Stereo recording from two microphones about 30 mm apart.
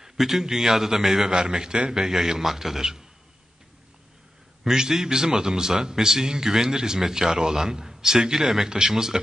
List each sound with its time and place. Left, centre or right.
0.2 s a man's voice: centre
1.2 s a man's voice: right
2.0 s a man's voice: centre
4.6 s a man's voice: centre